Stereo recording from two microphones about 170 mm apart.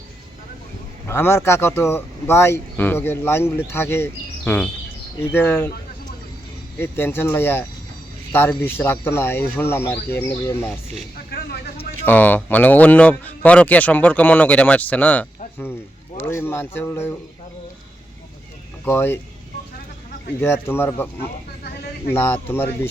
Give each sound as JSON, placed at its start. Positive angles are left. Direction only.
{"t": 1.0, "sound": "speech", "side_deg": 15}
{"t": 6.7, "sound": "speech", "side_deg": 15}
{"t": 11.3, "sound": "a sound", "side_deg": 65}
{"t": 12.0, "sound": "speech", "side_deg": 10}
{"t": 18.9, "sound": "speech", "side_deg": 15}
{"t": 20.4, "sound": "speech", "side_deg": 15}
{"t": 22.1, "sound": "speech", "side_deg": 15}